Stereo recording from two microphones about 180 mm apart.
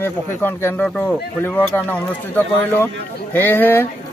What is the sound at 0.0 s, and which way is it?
Speech, 10° left (ahead or behind).